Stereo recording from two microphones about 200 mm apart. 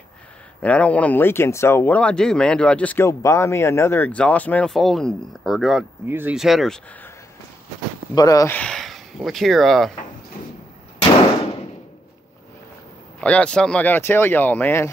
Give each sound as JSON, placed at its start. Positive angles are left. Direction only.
{"t": 0.6, "sound": "speech", "side_deg": 5}
{"t": 8.1, "sound": "speech", "side_deg": 20}
{"t": 8.5, "sound": "speech", "side_deg": 5}
{"t": 13.2, "sound": "speech", "side_deg": 5}